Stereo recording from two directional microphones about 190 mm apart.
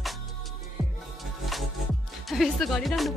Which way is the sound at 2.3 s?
Centre (ahead or behind).